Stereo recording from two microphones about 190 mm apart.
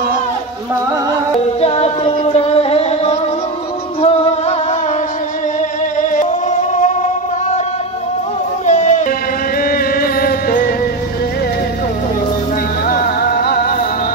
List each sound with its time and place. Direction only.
1.6 s music: 30° left (ahead or behind)
6.7 s music: 40° left (ahead or behind)
8.6 s a sound: 40° left (ahead or behind)
9.6 s music: 50° left (ahead or behind)
12.8 s music: 50° left (ahead or behind)